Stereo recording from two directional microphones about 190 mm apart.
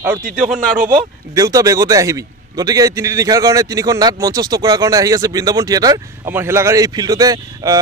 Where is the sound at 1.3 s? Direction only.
15° right (ahead or behind).